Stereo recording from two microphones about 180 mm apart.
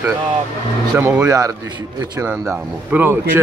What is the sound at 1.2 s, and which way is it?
A man's voice, 20° right (ahead or behind).